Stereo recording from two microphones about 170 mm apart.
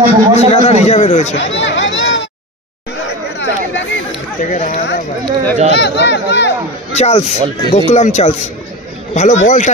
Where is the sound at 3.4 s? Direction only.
90° left.